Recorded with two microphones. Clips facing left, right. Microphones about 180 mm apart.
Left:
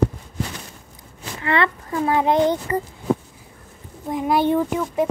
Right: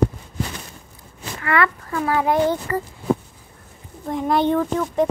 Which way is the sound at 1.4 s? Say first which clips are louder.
Even; 25° left (ahead or behind).